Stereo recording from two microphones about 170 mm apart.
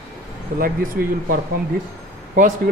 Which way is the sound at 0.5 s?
55° right (ahead or behind).